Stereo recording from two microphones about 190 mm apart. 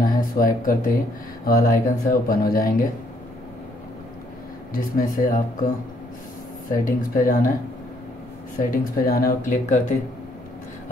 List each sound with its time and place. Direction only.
0.0 s speech: 50° left (ahead or behind)
4.7 s speech: 50° left (ahead or behind)
6.7 s speech: 45° left (ahead or behind)
8.6 s speech: 50° left (ahead or behind)